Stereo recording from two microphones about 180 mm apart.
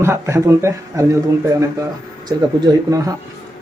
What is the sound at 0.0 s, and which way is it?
A man's voice, 15° right (ahead or behind).